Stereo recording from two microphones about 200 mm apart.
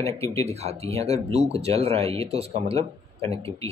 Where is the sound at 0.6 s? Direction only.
30° right (ahead or behind).